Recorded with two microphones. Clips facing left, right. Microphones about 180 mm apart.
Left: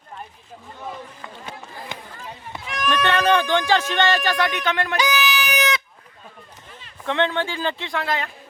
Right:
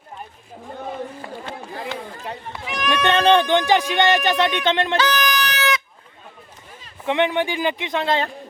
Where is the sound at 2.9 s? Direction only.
20° right (ahead or behind).